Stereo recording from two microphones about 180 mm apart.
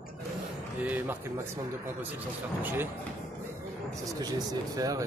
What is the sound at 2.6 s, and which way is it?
Speech, 10° right (ahead or behind).